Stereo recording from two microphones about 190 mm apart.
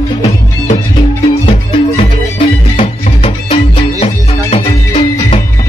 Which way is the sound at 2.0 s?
30° left (ahead or behind).